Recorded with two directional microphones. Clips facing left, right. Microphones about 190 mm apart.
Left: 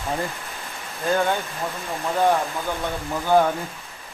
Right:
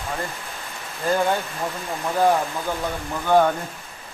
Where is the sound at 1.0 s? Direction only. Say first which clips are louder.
Right 1 dB; centre (ahead or behind).